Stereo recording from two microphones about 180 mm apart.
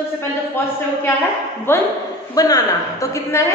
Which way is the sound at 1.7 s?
10° left (ahead or behind).